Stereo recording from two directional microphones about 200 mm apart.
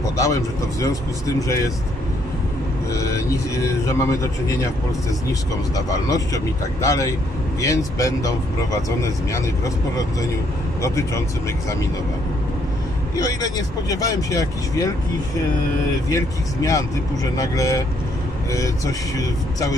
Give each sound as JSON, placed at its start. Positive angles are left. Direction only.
{"t": 0.0, "sound": "speech", "side_deg": 15}
{"t": 2.9, "sound": "speech", "side_deg": 15}
{"t": 5.8, "sound": "speech", "side_deg": 15}
{"t": 10.8, "sound": "speech", "side_deg": 15}
{"t": 13.1, "sound": "speech", "side_deg": 15}
{"t": 16.1, "sound": "speech", "side_deg": 15}